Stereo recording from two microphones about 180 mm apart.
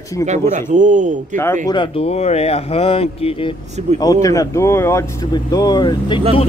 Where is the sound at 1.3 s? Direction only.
15° left (ahead or behind).